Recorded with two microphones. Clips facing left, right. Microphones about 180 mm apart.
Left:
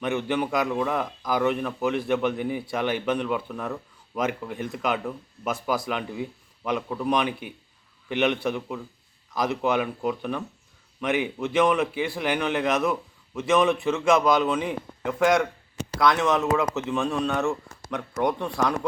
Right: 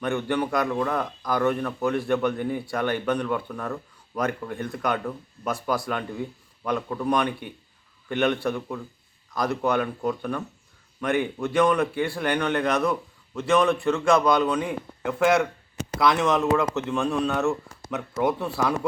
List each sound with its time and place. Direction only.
0.0 s a man's voice: 5° left (ahead or behind)
8.1 s a man's voice: 15° left (ahead or behind)
8.4 s speech: 5° left (ahead or behind)